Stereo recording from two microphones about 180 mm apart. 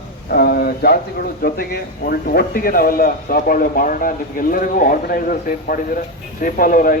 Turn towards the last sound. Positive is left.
turn(degrees=50)  # may be behind; listen again after turning